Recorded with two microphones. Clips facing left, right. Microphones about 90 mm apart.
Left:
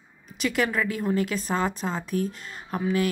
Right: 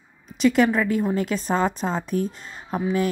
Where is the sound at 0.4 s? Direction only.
35° right (ahead or behind).